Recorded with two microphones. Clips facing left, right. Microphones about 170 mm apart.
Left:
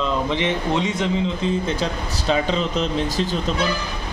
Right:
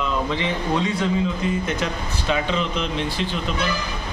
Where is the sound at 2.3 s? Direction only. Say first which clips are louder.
Left 2 dB; 35° left (ahead or behind).